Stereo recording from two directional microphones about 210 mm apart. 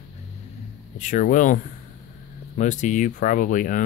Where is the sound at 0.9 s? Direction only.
40° left (ahead or behind).